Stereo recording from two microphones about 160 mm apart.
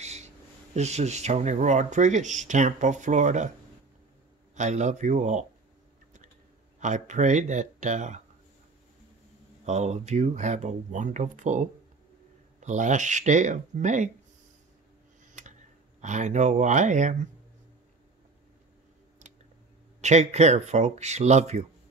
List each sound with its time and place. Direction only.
0.0 s a sound: 45° right (ahead or behind)
0.7 s speech: 45° right (ahead or behind)
4.6 s speech: 45° right (ahead or behind)
6.8 s speech: 50° right (ahead or behind)
9.7 s speech: 45° right (ahead or behind)
16.0 s speech: 50° right (ahead or behind)
20.0 s speech: 45° right (ahead or behind)